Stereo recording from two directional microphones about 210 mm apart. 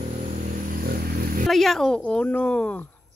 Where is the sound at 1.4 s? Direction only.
Centre (ahead or behind).